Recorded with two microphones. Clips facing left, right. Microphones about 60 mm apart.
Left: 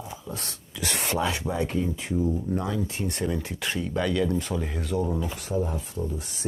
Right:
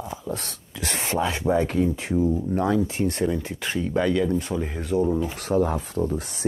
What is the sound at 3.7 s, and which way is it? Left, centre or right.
Speech, right.